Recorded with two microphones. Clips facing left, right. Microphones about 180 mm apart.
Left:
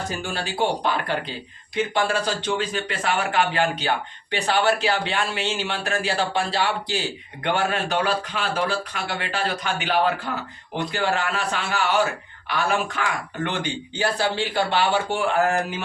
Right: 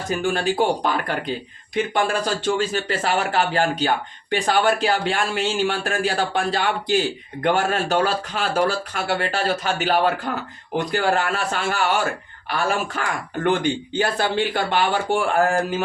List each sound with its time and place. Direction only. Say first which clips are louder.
0.2 s speech: right 6 dB; 50° right (ahead or behind)